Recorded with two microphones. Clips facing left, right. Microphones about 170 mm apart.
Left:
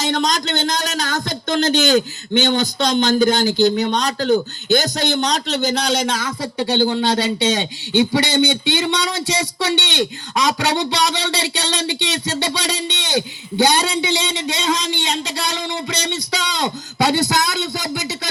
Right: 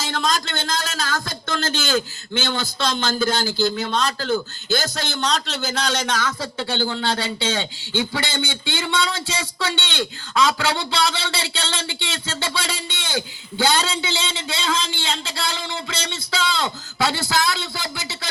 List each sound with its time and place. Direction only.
0.0 s a man's voice: 20° left (ahead or behind)